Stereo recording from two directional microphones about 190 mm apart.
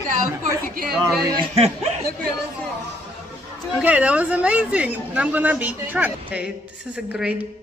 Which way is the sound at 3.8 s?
5° right (ahead or behind).